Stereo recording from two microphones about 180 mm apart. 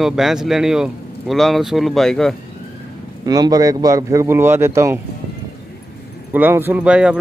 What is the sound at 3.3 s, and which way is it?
Speech, 20° right (ahead or behind).